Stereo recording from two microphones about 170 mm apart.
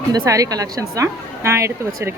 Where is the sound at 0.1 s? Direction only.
20° right (ahead or behind).